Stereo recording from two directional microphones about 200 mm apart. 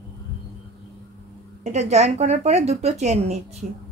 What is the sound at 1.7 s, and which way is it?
A woman's voice, 35° right (ahead or behind).